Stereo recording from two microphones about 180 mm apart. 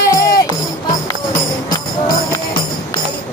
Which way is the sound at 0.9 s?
45° left (ahead or behind).